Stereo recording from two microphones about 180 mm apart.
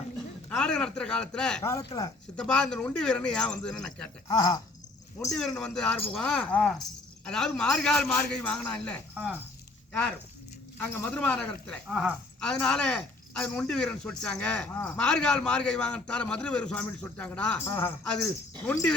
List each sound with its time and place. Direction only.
0.5 s speech: 5° left (ahead or behind)
1.8 s speech: 20° left (ahead or behind)
2.3 s speech: 5° left (ahead or behind)
4.3 s speech: 20° left (ahead or behind)
5.4 s speech: 5° left (ahead or behind)
9.1 s speech: 5° right (ahead or behind)
10.8 s speech: 10° left (ahead or behind)